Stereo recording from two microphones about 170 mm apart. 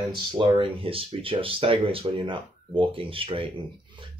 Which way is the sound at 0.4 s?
30° right (ahead or behind).